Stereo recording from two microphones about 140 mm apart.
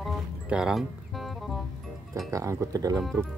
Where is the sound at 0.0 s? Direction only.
5° right (ahead or behind).